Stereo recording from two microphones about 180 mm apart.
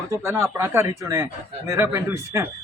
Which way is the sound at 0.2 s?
15° right (ahead or behind).